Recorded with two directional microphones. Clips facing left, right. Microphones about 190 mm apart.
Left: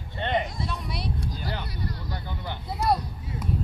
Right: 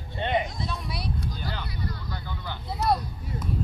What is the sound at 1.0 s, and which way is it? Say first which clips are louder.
Music: even; 30° left (ahead or behind).